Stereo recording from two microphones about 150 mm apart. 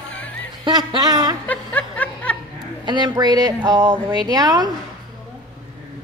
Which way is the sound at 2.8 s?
30° right (ahead or behind).